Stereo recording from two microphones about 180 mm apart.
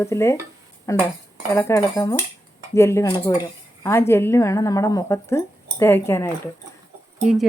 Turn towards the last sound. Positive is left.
turn(degrees=-5)  # may be behind; listen again after turning